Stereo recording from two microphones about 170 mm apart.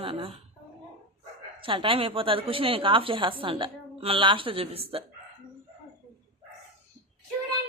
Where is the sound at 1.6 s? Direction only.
30° right (ahead or behind).